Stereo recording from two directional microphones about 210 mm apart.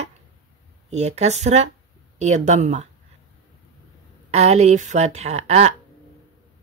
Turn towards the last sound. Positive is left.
turn(degrees=-30)  # may be behind; listen again after turning